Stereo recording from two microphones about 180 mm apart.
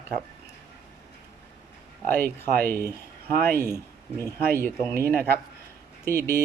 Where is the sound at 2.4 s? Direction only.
60° right (ahead or behind).